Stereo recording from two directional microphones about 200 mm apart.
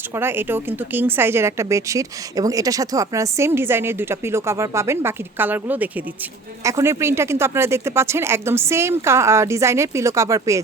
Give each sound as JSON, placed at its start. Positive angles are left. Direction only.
{"t": 0.2, "sound": "speech", "side_deg": -10}